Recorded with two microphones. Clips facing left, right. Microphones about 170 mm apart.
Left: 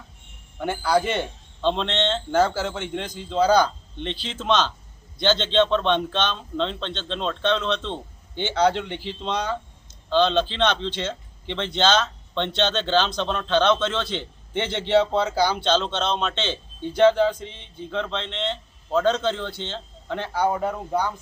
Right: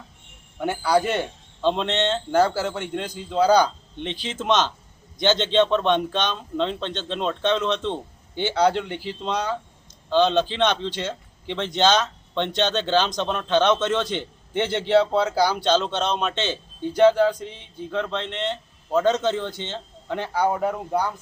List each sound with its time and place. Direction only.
0.6 s speech: 5° right (ahead or behind)